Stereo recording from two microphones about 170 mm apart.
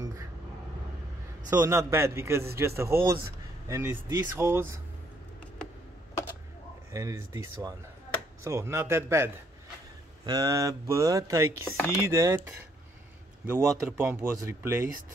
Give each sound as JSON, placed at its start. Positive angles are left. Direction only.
{"t": 1.5, "sound": "speech", "side_deg": -20}
{"t": 6.9, "sound": "speech", "side_deg": -15}
{"t": 11.6, "sound": "speech", "side_deg": 10}
{"t": 12.1, "sound": "speech", "side_deg": -15}